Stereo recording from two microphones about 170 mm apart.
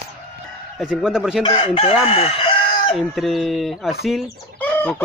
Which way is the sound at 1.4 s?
35° left (ahead or behind).